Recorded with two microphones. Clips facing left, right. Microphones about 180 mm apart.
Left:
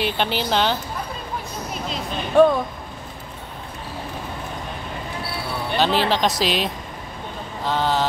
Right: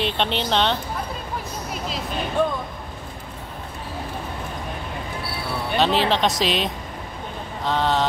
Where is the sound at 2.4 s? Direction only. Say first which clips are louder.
Left 9 dB; 75° left (ahead or behind).